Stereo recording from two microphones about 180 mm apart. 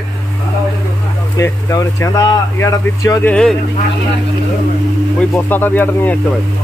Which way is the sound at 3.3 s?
5° left (ahead or behind).